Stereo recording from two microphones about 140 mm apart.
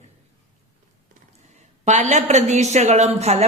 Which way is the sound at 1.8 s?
55° right (ahead or behind).